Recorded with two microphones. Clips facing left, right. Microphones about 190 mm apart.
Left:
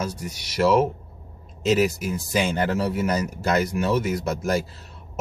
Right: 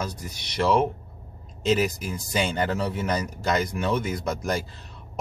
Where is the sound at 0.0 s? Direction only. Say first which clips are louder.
Left 3 dB; 5° left (ahead or behind).